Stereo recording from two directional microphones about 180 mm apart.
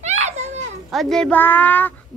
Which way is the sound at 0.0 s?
40° right (ahead or behind).